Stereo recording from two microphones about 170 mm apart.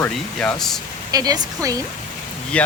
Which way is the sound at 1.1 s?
20° right (ahead or behind).